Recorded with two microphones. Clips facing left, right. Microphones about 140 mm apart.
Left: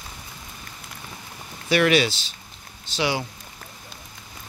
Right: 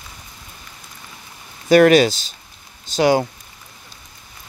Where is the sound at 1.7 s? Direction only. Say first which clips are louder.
Right 8 dB; 45° right (ahead or behind).